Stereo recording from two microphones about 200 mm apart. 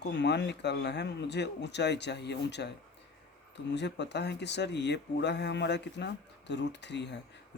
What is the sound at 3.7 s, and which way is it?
Speech, 60° left (ahead or behind).